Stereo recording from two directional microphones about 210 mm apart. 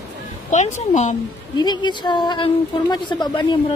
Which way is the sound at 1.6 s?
20° left (ahead or behind).